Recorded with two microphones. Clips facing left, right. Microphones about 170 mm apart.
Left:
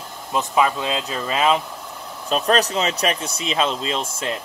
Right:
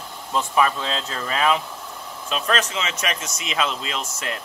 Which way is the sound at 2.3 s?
40° left (ahead or behind).